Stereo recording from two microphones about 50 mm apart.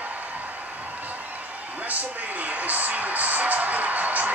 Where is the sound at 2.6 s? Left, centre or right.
Right.